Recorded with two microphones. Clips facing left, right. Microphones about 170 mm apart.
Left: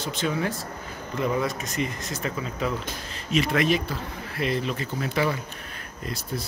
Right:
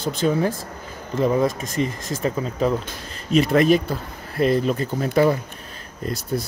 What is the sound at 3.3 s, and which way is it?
Speech, 40° right (ahead or behind).